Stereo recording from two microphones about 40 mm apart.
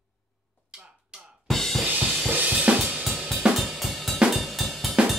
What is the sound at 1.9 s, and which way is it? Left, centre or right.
Drum kit, right.